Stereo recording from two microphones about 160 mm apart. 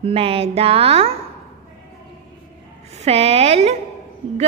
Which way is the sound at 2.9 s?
40° right (ahead or behind).